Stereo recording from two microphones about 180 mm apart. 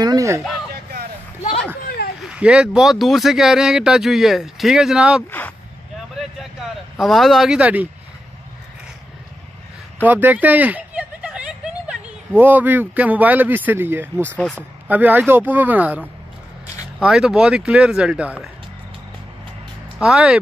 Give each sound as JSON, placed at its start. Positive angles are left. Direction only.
{"t": 0.0, "sound": "a sound", "side_deg": -20}
{"t": 2.2, "sound": "speech", "side_deg": -5}
{"t": 7.0, "sound": "speech", "side_deg": 0}
{"t": 9.9, "sound": "speech", "side_deg": -10}
{"t": 14.2, "sound": "speech", "side_deg": 5}
{"t": 14.9, "sound": "speech", "side_deg": -10}
{"t": 17.0, "sound": "speech", "side_deg": -5}
{"t": 20.0, "sound": "speech", "side_deg": -5}